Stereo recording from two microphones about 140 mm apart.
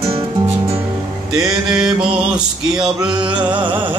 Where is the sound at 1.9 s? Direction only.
5° right (ahead or behind).